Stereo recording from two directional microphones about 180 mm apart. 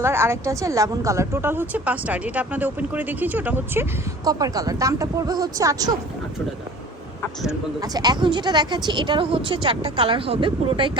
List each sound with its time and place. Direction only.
0.0 s a woman's voice: 15° right (ahead or behind)
4.3 s a woman's voice: 20° right (ahead or behind)
7.8 s a woman's voice: 20° right (ahead or behind)